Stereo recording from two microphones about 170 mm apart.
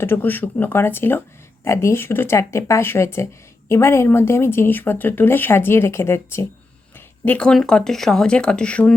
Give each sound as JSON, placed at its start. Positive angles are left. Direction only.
{"t": 0.0, "sound": "speech", "side_deg": 10}